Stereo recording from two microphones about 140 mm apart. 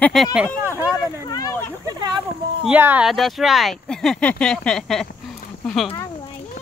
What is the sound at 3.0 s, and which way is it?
Speech, centre (ahead or behind).